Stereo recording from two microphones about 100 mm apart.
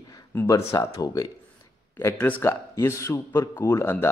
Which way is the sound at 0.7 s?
35° left (ahead or behind).